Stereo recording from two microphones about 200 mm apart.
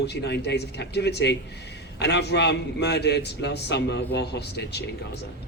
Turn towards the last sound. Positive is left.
turn(degrees=55)  # may be behind; listen again after turning